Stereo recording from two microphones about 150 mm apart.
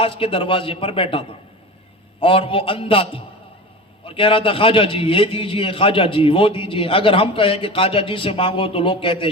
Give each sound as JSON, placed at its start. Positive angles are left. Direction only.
{"t": 0.0, "sound": "a man's voice", "side_deg": 35}
{"t": 2.2, "sound": "a man's voice", "side_deg": 35}